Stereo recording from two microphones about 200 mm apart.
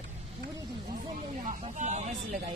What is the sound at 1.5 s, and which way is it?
Speech, 35° right (ahead or behind).